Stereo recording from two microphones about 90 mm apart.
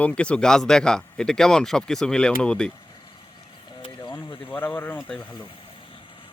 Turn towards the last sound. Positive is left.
turn(degrees=20)  # may be behind; listen again after turning